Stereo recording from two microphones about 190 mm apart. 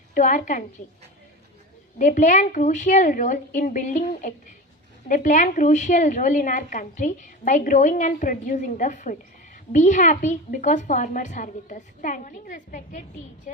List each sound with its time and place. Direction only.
0.1 s a woman's voice: 40° left (ahead or behind)
2.0 s a woman's voice: 40° left (ahead or behind)